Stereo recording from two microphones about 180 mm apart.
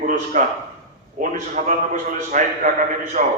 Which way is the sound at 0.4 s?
45° right (ahead or behind).